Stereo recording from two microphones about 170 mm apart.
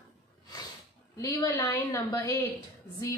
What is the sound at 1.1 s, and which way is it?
A woman's voice, 20° left (ahead or behind).